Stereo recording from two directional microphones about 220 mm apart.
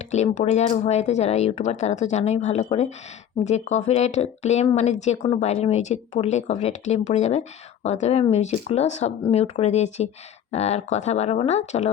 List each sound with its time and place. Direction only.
0.0 s speech: 30° left (ahead or behind)